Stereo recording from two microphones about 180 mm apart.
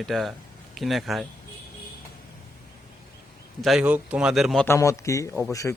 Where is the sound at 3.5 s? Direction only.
Centre (ahead or behind).